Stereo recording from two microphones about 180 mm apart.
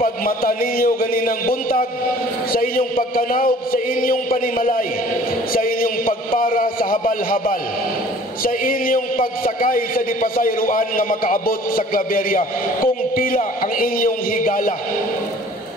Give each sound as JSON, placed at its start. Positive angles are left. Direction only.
{"t": 0.0, "sound": "a man's voice", "side_deg": 50}